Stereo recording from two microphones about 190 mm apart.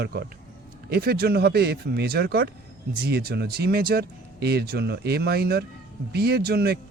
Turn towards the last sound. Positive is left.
turn(degrees=-55)  # may be behind; listen again after turning